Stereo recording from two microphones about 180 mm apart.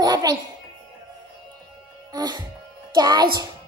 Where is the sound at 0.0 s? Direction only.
20° right (ahead or behind).